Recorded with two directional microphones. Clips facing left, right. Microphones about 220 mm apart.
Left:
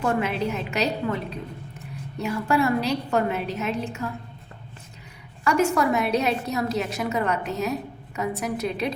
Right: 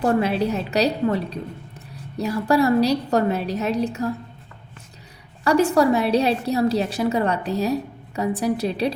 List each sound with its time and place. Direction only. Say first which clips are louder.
0.0 s a woman's voice: right 5 dB; 35° right (ahead or behind)
5.5 s a woman's voice: right 4 dB; 35° right (ahead or behind)